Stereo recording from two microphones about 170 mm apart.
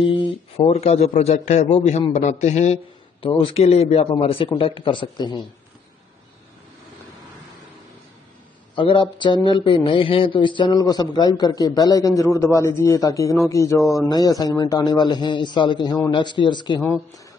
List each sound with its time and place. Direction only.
0.1 s a man's voice: 35° left (ahead or behind)
8.7 s a man's voice: 30° left (ahead or behind)
16.8 s speech: centre (ahead or behind)